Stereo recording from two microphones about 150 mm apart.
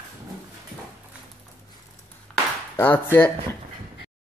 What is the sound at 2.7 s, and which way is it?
Speech, 15° left (ahead or behind).